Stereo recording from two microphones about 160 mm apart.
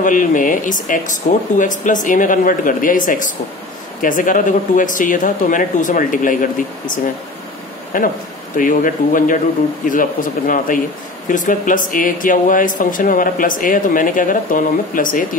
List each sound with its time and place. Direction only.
0.0 s speech: 55° left (ahead or behind)
7.9 s speech: 60° left (ahead or behind)